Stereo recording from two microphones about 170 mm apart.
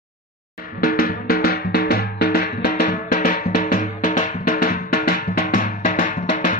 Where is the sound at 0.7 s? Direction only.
60° left (ahead or behind).